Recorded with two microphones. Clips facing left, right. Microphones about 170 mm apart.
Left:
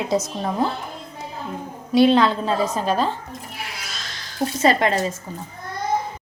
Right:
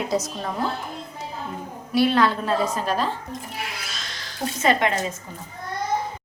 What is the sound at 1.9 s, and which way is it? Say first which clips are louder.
Speech: left 4 dB; 20° left (ahead or behind).